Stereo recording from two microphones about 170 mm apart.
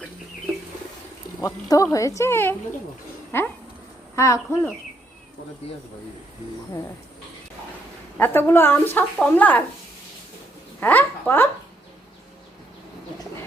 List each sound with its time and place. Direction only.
1.4 s a woman's voice: 20° left (ahead or behind)
8.2 s a woman's voice: 15° left (ahead or behind)
10.8 s a child's voice: 10° left (ahead or behind)